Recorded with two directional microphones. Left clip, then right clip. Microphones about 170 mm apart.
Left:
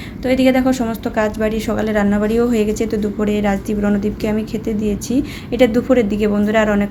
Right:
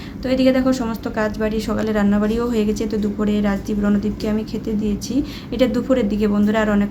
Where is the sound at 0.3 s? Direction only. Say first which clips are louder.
Left 2 dB; 15° left (ahead or behind).